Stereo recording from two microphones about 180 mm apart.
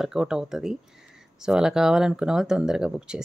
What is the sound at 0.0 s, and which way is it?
Speech, 5° right (ahead or behind).